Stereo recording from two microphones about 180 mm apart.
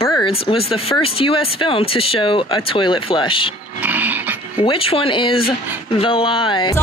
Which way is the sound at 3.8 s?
10° right (ahead or behind).